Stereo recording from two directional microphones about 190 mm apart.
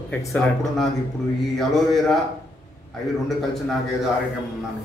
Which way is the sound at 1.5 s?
Centre (ahead or behind).